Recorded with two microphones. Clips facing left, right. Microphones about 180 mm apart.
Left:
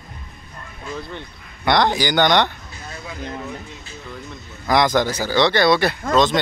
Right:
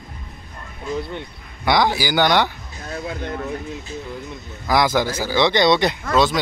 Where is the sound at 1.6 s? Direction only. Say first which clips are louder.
Left 1 dB; 5° right (ahead or behind).